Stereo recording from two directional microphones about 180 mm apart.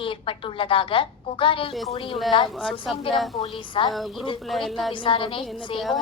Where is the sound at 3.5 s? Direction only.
30° left (ahead or behind).